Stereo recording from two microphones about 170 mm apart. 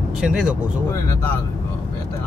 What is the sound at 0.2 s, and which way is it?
Speech, 5° right (ahead or behind).